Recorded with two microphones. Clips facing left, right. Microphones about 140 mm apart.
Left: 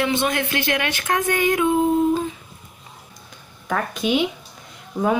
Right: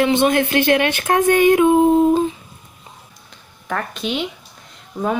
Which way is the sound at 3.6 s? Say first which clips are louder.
Left 2 dB; 5° left (ahead or behind).